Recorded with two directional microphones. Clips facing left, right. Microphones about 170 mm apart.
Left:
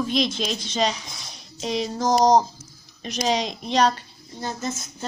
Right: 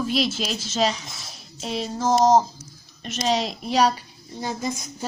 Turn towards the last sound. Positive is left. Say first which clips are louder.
# right 1 dB
turn(degrees=-10)  # may be behind; listen again after turning